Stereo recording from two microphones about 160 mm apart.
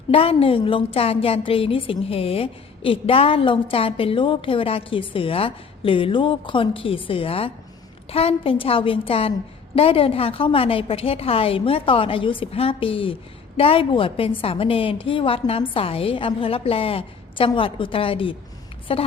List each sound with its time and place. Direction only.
0.1 s a woman's voice: 35° left (ahead or behind)